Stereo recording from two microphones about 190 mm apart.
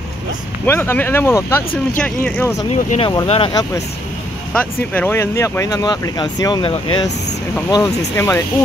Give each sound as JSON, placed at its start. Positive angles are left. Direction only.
{"t": 0.7, "sound": "speech", "side_deg": 10}
{"t": 3.0, "sound": "speech", "side_deg": 25}
{"t": 4.6, "sound": "speech", "side_deg": 10}